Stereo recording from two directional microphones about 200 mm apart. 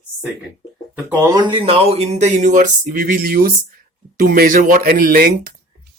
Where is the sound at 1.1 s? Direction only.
20° right (ahead or behind).